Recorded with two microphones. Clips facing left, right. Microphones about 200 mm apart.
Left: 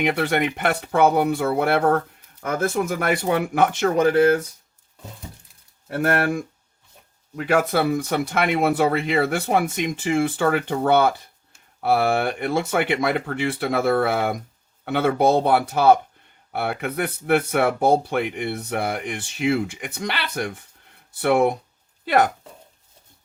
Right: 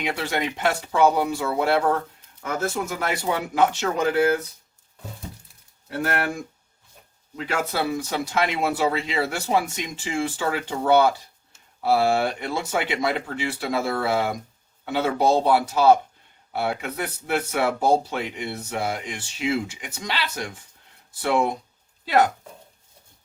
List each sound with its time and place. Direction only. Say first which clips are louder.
0.0 s speech: left 5 dB; 60° left (ahead or behind)
5.9 s speech: left 5 dB; 55° left (ahead or behind)